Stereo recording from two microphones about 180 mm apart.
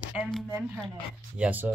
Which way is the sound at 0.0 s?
Centre (ahead or behind).